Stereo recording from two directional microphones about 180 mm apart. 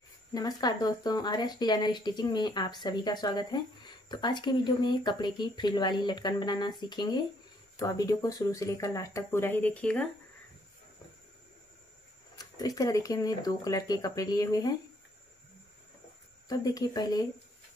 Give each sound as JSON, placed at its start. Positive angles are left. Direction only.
{"t": 0.3, "sound": "speech", "side_deg": 20}
{"t": 12.4, "sound": "speech", "side_deg": 20}
{"t": 16.4, "sound": "speech", "side_deg": 20}